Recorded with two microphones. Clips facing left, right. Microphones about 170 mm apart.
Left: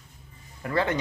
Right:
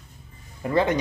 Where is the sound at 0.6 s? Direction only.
20° right (ahead or behind).